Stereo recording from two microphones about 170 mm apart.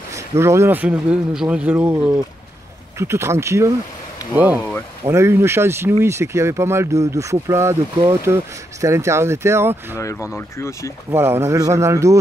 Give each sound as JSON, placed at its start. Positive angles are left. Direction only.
{"t": 0.1, "sound": "speech", "side_deg": -15}
{"t": 4.6, "sound": "speech", "side_deg": 10}
{"t": 5.0, "sound": "speech", "side_deg": -15}
{"t": 10.3, "sound": "speech", "side_deg": 15}
{"t": 11.1, "sound": "speech", "side_deg": -15}